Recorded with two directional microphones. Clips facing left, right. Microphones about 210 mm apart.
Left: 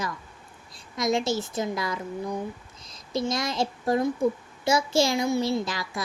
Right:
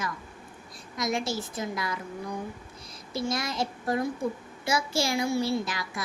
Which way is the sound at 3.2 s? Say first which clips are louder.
Left 3 dB; 25° left (ahead or behind).